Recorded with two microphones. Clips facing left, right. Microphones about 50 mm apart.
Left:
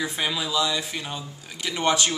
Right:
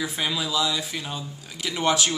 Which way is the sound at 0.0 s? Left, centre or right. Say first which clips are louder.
Even; centre.